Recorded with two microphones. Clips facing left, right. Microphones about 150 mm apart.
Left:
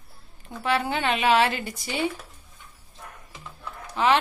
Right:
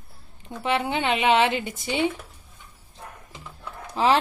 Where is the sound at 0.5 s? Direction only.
20° right (ahead or behind).